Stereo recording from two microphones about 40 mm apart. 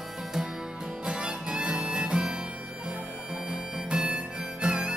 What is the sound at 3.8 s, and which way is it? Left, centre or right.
Harmonica, right.